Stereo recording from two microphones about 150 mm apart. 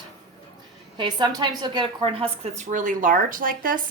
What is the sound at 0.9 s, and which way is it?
A woman's voice, 30° right (ahead or behind).